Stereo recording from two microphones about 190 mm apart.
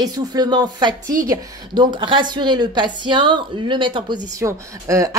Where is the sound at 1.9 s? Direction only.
25° right (ahead or behind).